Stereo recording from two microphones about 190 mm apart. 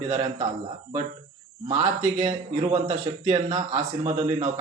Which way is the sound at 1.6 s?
35° right (ahead or behind).